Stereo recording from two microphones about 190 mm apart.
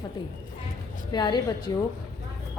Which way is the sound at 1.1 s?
25° left (ahead or behind).